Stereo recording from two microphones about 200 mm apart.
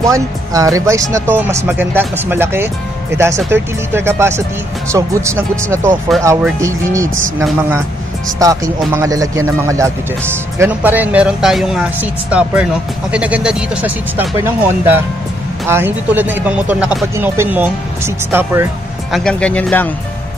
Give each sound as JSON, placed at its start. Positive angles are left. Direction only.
{"t": 0.0, "sound": "speech", "side_deg": -15}
{"t": 19.1, "sound": "speech", "side_deg": 5}